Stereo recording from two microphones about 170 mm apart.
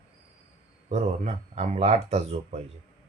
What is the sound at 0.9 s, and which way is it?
Speech, 40° right (ahead or behind).